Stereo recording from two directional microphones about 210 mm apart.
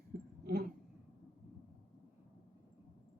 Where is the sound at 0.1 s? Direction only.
45° right (ahead or behind).